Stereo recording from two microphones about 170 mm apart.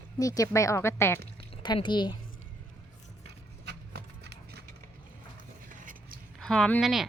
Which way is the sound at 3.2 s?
75° right (ahead or behind).